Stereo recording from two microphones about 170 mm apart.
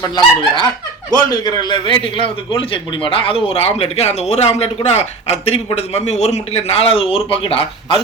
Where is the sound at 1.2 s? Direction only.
25° left (ahead or behind).